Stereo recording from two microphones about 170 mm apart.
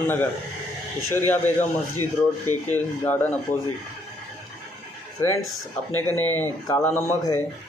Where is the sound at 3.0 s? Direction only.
10° left (ahead or behind).